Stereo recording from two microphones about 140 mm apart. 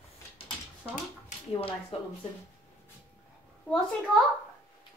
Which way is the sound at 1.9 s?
40° left (ahead or behind).